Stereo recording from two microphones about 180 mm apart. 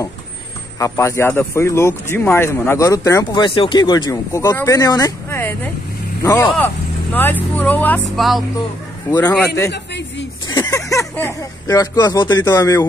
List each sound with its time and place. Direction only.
0.7 s speech: 15° left (ahead or behind)
10.5 s speech: 20° left (ahead or behind)